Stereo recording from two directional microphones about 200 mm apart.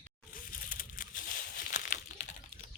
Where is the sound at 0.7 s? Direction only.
45° left (ahead or behind).